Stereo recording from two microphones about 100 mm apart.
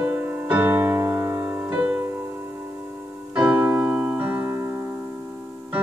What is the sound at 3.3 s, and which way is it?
Keyboard, 15° right (ahead or behind).